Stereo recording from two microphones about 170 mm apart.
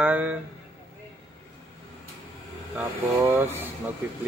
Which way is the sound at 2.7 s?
10° right (ahead or behind).